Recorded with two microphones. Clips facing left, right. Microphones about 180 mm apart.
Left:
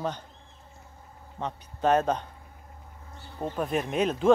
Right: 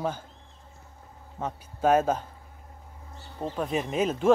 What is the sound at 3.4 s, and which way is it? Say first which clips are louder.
Speech: even; centre (ahead or behind).